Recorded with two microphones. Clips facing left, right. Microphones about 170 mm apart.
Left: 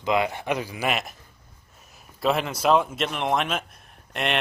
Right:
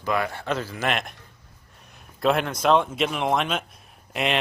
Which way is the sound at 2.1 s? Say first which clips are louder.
Right 2 dB; centre (ahead or behind).